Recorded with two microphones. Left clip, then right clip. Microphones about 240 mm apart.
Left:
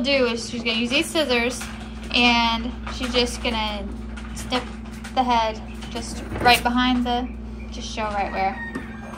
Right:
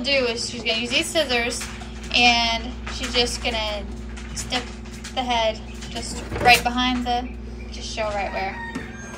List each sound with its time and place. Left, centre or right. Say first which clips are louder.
0.0 s a woman's voice: left 1 dB; centre
5.1 s speech: left 4 dB; left
5.9 s a woman's voice: right 1 dB; centre